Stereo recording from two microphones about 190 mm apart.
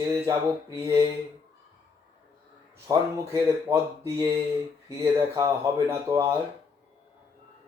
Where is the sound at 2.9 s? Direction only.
15° right (ahead or behind).